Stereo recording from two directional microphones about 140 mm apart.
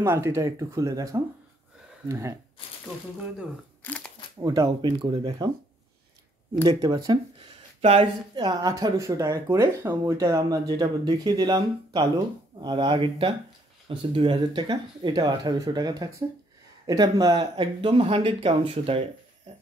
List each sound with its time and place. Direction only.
0.0 s speech: 15° right (ahead or behind)
3.8 s a sound: 10° left (ahead or behind)
4.4 s speech: 25° right (ahead or behind)
6.7 s speech: 25° right (ahead or behind)